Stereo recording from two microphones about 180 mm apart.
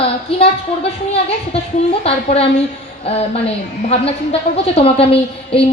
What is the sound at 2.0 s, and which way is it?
A woman's voice, 35° left (ahead or behind).